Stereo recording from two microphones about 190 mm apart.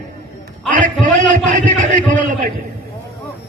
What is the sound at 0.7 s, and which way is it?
A man's voice, 40° right (ahead or behind).